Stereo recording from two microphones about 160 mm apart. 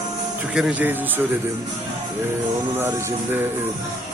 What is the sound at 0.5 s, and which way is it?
Speech, 5° right (ahead or behind).